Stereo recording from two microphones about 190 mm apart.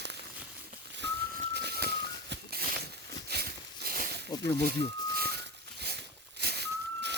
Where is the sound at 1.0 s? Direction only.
65° right (ahead or behind).